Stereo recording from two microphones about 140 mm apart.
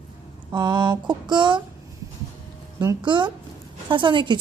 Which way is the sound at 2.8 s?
30° right (ahead or behind).